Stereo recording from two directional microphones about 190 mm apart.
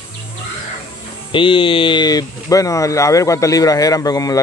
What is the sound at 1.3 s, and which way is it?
Speech, 25° left (ahead or behind).